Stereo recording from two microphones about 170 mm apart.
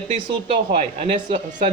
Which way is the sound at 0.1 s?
40° right (ahead or behind).